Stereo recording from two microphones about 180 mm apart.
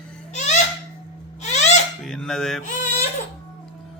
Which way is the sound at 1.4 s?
40° left (ahead or behind).